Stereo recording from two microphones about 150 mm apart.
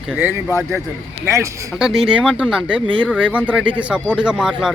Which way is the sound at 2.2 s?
5° right (ahead or behind).